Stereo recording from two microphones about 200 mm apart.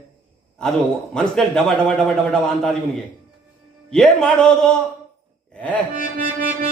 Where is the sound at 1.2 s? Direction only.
5° left (ahead or behind).